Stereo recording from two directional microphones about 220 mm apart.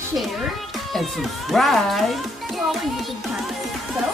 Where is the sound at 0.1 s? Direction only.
Centre (ahead or behind).